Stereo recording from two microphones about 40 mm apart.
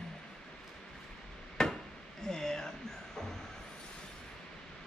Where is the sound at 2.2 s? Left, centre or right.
Centre.